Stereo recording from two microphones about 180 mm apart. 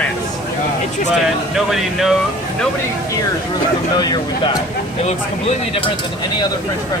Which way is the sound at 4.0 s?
25° left (ahead or behind).